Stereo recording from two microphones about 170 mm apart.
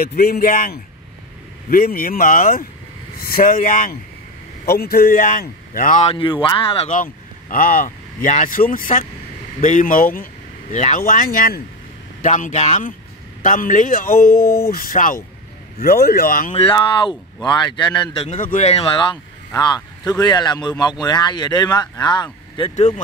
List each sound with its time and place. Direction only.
0.0 s a man's voice: 60° left (ahead or behind)
4.6 s a man's voice: 60° left (ahead or behind)
6.1 s speech: 30° left (ahead or behind)
6.9 s a man's voice: 50° left (ahead or behind)
12.2 s a man's voice: 45° left (ahead or behind)
14.4 s a sound: 15° left (ahead or behind)
14.7 s a man's voice: 55° left (ahead or behind)
16.5 s speech: 30° left (ahead or behind)
18.4 s speech: 45° left (ahead or behind); by 22.7 s 25° left (ahead or behind)
22.8 s a man's voice: 45° left (ahead or behind)